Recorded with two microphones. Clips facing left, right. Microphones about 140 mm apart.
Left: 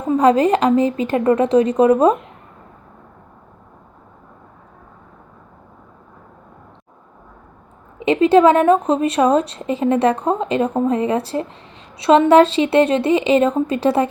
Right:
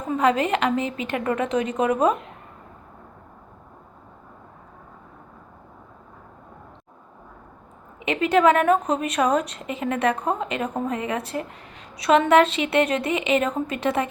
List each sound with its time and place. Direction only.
0.2 s a woman's voice: 35° left (ahead or behind)
7.9 s a woman's voice: 30° left (ahead or behind)